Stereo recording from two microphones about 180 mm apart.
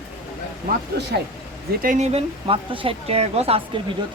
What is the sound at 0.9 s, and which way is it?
Speech, 65° right (ahead or behind).